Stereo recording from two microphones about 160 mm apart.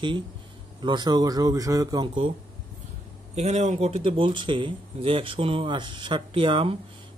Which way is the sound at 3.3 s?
45° right (ahead or behind).